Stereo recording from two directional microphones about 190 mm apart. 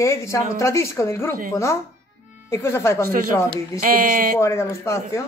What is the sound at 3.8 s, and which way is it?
Speech, 45° right (ahead or behind).